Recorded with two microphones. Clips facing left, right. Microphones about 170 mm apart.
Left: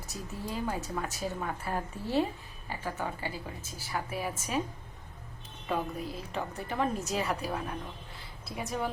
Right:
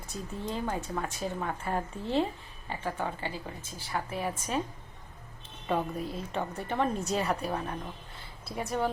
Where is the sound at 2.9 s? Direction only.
15° right (ahead or behind).